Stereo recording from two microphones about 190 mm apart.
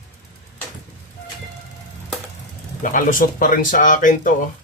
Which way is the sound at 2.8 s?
45° left (ahead or behind).